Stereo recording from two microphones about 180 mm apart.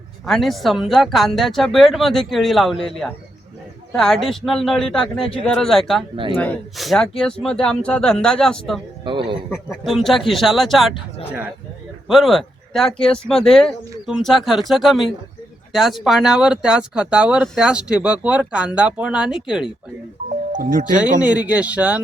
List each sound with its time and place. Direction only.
0.3 s speech: centre (ahead or behind)
9.0 s a man's voice: 25° right (ahead or behind)
9.5 s a man's voice: centre (ahead or behind)
20.5 s speech: 45° right (ahead or behind)
21.2 s speech: 10° right (ahead or behind)